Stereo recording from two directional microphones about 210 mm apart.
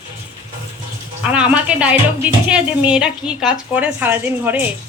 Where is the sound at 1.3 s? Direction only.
5° right (ahead or behind).